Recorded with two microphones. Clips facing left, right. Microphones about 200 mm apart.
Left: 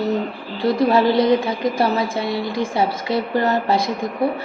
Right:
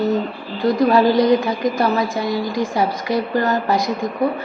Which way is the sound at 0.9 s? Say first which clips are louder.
Right 2 dB; 25° left (ahead or behind).